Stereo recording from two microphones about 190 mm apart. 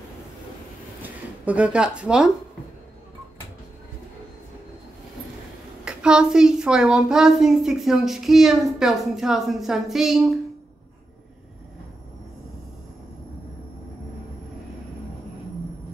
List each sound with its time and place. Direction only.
1.0 s speech: 10° right (ahead or behind)
5.9 s a woman's voice: 5° right (ahead or behind)